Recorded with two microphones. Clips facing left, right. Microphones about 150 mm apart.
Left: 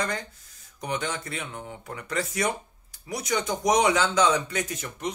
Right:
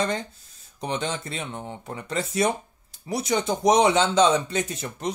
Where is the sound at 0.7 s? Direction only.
25° right (ahead or behind).